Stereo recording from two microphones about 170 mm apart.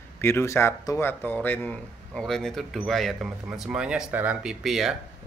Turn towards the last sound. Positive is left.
turn(degrees=0)  # may be behind; listen again after turning